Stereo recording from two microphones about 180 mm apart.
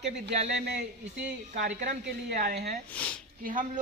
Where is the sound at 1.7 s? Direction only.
45° right (ahead or behind).